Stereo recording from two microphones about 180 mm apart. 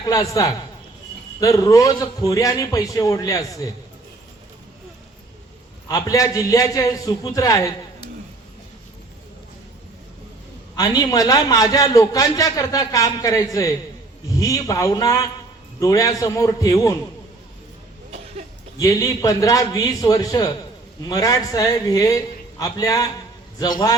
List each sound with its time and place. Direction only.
0.1 s a man's voice: 20° left (ahead or behind)
5.9 s a man's voice: 20° left (ahead or behind)
10.8 s a man's voice: 20° left (ahead or behind)
18.8 s a man's voice: 20° left (ahead or behind)